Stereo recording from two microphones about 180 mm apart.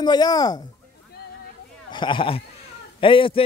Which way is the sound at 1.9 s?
25° left (ahead or behind).